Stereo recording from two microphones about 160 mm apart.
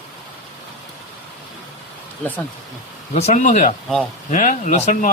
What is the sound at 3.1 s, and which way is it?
Speech, 45° left (ahead or behind).